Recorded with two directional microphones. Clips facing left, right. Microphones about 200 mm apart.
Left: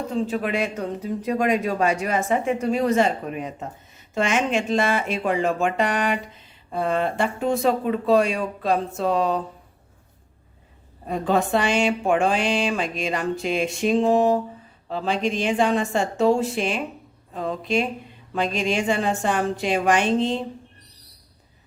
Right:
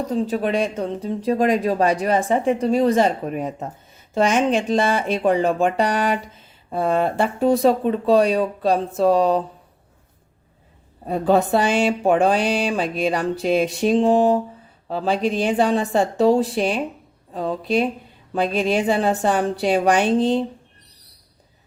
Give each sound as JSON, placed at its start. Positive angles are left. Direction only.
{"t": 0.1, "sound": "speech", "side_deg": -35}
{"t": 11.0, "sound": "speech", "side_deg": -35}